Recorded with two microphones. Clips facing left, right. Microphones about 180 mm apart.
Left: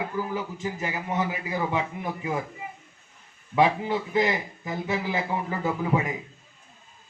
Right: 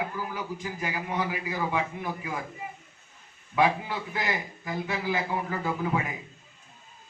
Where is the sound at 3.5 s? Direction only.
20° left (ahead or behind).